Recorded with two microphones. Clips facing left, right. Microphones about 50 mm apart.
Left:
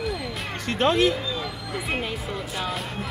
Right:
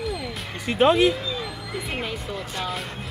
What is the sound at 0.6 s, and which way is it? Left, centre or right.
Speech, centre.